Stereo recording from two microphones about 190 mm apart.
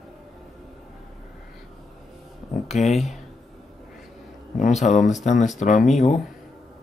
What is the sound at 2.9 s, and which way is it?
Speech, centre (ahead or behind).